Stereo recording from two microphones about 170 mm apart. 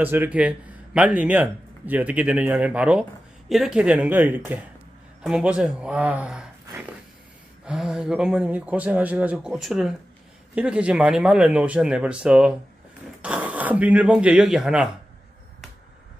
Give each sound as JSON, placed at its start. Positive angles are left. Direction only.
{"t": 0.0, "sound": "speech", "side_deg": -10}
{"t": 7.6, "sound": "speech", "side_deg": -5}